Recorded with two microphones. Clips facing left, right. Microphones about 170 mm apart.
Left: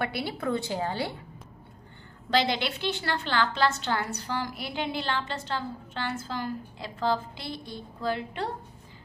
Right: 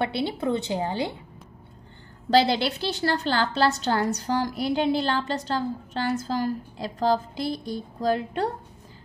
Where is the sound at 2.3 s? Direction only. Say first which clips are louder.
Right 6 dB; 35° right (ahead or behind).